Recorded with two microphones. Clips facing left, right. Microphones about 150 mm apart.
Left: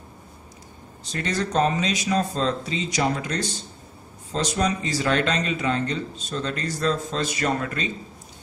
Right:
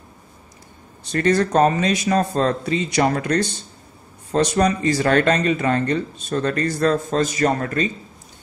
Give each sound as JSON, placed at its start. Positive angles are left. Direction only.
{"t": 1.1, "sound": "speech", "side_deg": -55}